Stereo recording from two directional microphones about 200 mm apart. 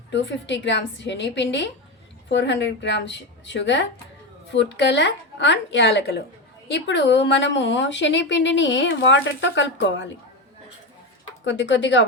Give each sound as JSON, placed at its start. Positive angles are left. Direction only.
{"t": 0.1, "sound": "a woman's voice", "side_deg": 65}
{"t": 11.4, "sound": "a woman's voice", "side_deg": 65}